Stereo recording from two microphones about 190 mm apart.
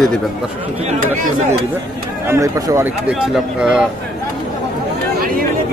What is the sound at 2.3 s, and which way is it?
Speech, 15° right (ahead or behind).